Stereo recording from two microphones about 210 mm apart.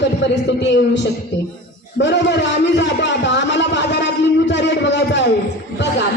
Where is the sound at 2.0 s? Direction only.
55° left (ahead or behind).